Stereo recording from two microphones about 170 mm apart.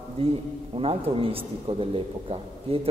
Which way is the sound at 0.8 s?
35° right (ahead or behind).